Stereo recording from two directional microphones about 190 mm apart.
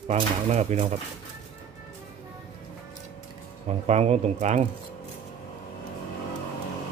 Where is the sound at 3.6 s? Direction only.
35° right (ahead or behind).